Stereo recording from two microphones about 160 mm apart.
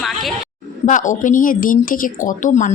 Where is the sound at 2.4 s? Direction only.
45° left (ahead or behind).